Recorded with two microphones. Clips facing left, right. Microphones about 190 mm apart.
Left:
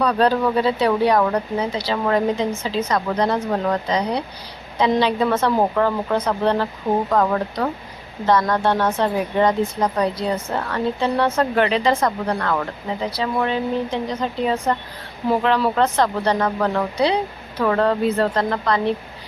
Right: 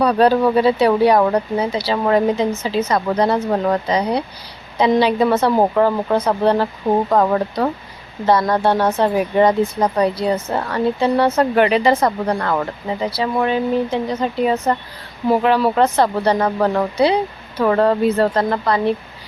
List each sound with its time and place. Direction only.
0.0 s speech: 10° right (ahead or behind)